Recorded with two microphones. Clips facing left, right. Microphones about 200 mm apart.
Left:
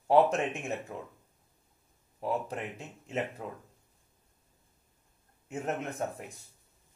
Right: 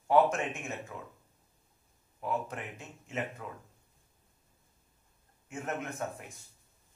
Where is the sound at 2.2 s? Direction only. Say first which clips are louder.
Left 2 dB; 35° left (ahead or behind).